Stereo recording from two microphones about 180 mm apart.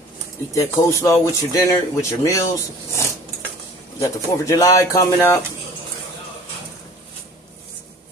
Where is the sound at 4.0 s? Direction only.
20° left (ahead or behind).